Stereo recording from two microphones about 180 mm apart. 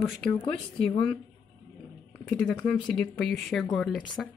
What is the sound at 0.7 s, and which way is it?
Speech, 30° left (ahead or behind).